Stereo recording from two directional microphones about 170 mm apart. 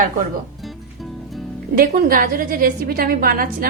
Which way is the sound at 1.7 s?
55° right (ahead or behind).